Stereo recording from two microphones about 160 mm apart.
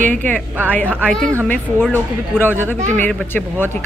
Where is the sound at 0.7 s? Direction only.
10° left (ahead or behind).